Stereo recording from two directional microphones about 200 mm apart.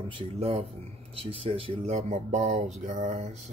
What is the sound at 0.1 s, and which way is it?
Speech, 30° right (ahead or behind).